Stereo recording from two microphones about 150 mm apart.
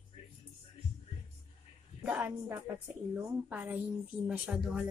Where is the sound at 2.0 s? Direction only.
10° right (ahead or behind).